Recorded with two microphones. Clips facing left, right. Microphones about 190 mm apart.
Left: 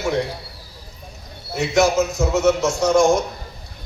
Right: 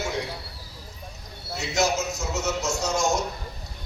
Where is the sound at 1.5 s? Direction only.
55° left (ahead or behind).